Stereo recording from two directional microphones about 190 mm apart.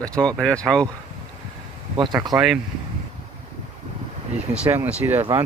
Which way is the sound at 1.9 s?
20° right (ahead or behind).